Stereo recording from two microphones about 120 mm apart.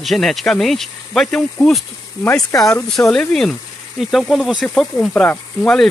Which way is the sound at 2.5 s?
15° left (ahead or behind).